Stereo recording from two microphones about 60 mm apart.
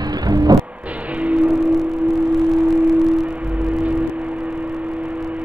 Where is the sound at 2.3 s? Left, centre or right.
Centre.